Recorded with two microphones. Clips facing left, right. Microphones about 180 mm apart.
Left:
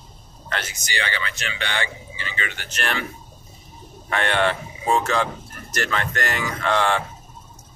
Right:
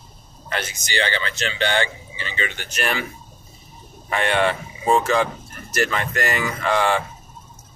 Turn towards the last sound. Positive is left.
turn(degrees=-5)  # may be behind; listen again after turning